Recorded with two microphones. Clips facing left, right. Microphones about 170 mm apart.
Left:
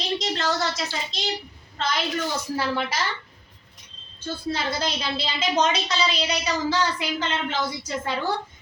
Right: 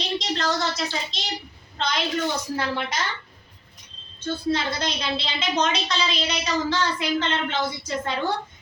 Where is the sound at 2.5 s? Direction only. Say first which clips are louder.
Left 1 dB; 5° left (ahead or behind).